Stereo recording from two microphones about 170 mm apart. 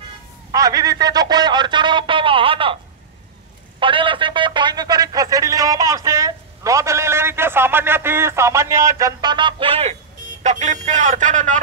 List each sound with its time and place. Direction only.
0.5 s speech: 20° right (ahead or behind)
3.8 s a sound: 30° right (ahead or behind)
10.4 s speech: 45° right (ahead or behind)